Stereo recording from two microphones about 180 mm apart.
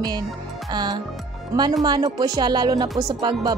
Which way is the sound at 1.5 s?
20° right (ahead or behind).